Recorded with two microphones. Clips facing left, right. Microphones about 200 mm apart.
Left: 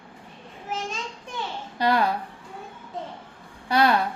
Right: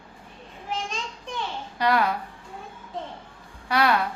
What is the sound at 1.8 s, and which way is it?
Speech, 30° left (ahead or behind).